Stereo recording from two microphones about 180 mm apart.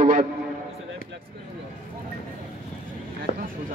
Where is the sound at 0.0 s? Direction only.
40° right (ahead or behind).